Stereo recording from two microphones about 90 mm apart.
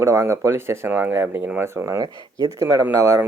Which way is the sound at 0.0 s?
35° right (ahead or behind).